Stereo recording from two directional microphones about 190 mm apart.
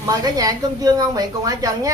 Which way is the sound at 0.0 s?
20° right (ahead or behind).